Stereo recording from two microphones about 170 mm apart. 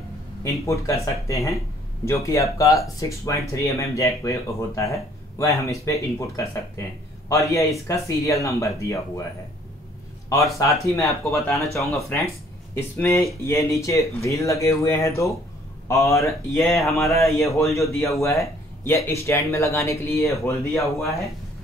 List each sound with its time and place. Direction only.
0.4 s speech: 20° left (ahead or behind)
10.3 s speech: 20° left (ahead or behind)